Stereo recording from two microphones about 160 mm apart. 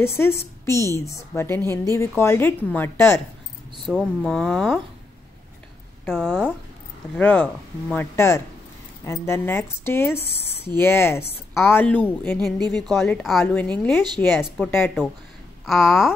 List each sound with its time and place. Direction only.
0.0 s speech: 15° left (ahead or behind)
3.8 s speech: centre (ahead or behind)
6.0 s speech: 5° right (ahead or behind)
7.2 s speech: 10° left (ahead or behind)